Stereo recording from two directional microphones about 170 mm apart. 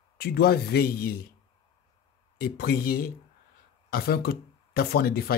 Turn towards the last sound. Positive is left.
turn(degrees=65)  # may be behind; listen again after turning